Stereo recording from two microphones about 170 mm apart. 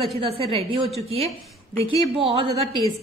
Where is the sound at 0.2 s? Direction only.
35° right (ahead or behind).